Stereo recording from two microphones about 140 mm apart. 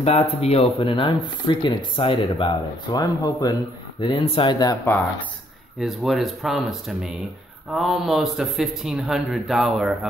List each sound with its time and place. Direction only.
0.0 s speech: 50° left (ahead or behind)
3.0 s speech: 25° left (ahead or behind)
4.0 s speech: 40° left (ahead or behind)
5.8 s speech: centre (ahead or behind)